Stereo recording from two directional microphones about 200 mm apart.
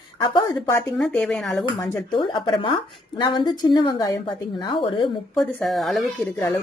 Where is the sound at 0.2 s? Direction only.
20° left (ahead or behind).